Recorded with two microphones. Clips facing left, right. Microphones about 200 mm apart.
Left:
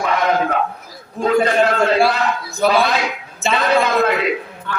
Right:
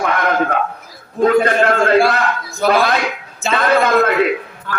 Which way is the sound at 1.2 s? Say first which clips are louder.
Right 2 dB; 55° right (ahead or behind).